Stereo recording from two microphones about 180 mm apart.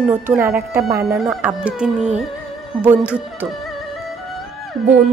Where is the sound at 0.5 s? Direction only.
15° right (ahead or behind).